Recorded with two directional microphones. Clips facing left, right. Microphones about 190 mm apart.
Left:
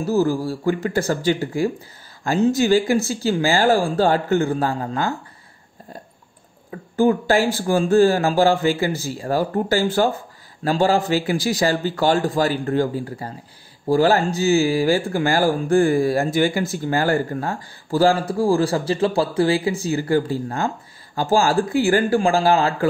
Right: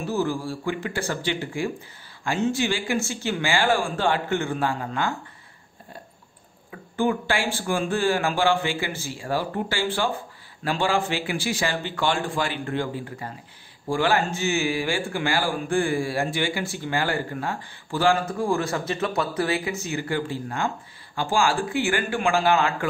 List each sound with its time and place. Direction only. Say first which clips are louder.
0.0 s speech: left 6 dB; 40° left (ahead or behind)
7.0 s speech: left 7 dB; 40° left (ahead or behind)